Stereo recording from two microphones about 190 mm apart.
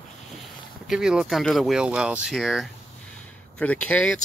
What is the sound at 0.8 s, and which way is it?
Speech, 5° right (ahead or behind).